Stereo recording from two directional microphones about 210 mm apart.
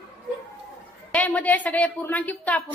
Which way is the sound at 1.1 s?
5° left (ahead or behind).